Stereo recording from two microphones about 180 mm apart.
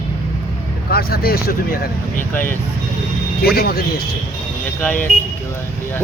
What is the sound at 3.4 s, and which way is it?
Speech, 60° left (ahead or behind).